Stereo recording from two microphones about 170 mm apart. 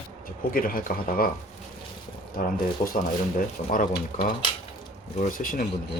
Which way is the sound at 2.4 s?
55° left (ahead or behind).